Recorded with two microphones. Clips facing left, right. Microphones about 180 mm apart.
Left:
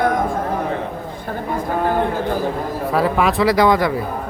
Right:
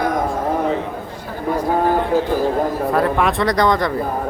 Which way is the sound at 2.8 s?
Centre (ahead or behind).